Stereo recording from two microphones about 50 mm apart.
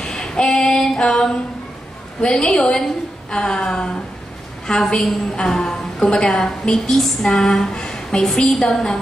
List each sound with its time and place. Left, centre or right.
0.0 s female singing: centre
2.2 s a woman's voice: centre